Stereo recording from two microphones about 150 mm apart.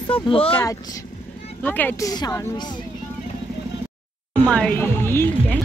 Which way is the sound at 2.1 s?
25° left (ahead or behind).